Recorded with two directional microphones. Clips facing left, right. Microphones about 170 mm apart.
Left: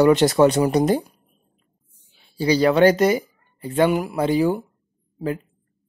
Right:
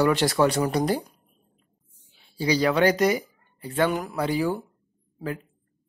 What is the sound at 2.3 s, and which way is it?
Speech, 30° left (ahead or behind).